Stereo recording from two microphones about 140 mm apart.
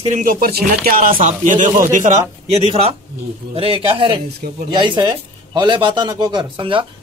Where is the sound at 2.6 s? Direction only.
40° right (ahead or behind).